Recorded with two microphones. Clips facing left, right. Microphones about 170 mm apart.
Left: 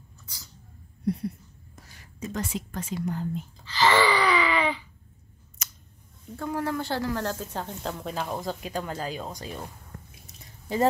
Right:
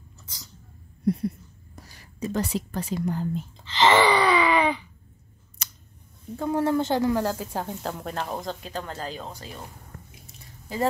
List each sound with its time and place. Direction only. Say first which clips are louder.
1.9 s a woman's voice: right 5 dB; 35° right (ahead or behind)
3.6 s gasp: right 3 dB; 20° right (ahead or behind)
5.6 s scissors: right 2 dB; 30° right (ahead or behind)
6.3 s speech: right 6 dB; 25° right (ahead or behind); by 8.5 s centre (ahead or behind)
8.6 s speech: left 2 dB; 10° left (ahead or behind)
10.2 s drip: left 2 dB; 20° left (ahead or behind)